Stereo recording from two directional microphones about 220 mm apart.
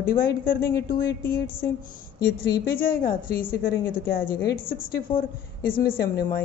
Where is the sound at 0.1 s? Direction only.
40° left (ahead or behind).